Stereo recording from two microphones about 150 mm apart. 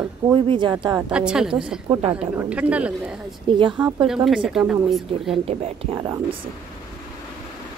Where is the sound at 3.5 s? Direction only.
35° right (ahead or behind).